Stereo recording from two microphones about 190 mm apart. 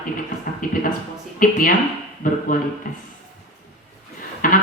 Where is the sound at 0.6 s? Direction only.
45° left (ahead or behind).